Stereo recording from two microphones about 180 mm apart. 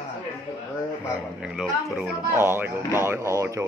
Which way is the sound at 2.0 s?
10° right (ahead or behind).